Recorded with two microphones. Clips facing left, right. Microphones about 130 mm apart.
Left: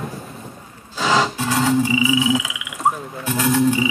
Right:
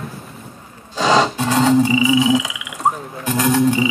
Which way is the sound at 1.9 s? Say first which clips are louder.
Right 3 dB; 35° right (ahead or behind).